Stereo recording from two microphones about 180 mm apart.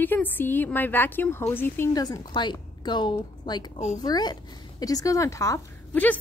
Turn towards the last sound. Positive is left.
turn(degrees=10)  # may be behind; listen again after turning